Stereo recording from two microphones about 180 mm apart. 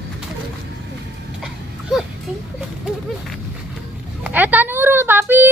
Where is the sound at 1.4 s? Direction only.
5° right (ahead or behind).